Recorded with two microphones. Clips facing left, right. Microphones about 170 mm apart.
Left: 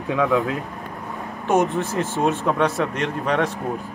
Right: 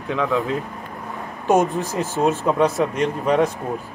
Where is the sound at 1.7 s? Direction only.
Centre (ahead or behind).